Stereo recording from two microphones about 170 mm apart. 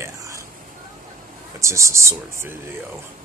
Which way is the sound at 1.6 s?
15° right (ahead or behind).